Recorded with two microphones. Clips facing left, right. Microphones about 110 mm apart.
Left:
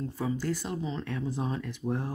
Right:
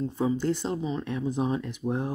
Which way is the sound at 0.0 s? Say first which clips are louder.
Right 5 dB; 20° right (ahead or behind).